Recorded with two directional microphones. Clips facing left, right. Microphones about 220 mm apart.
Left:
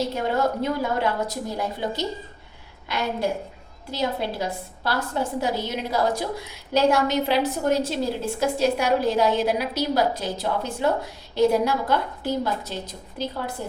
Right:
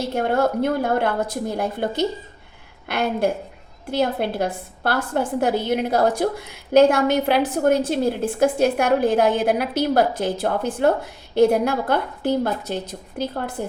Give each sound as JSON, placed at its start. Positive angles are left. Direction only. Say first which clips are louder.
{"t": 0.1, "sound": "a woman's voice", "louder": "right 4 dB", "side_deg": -55}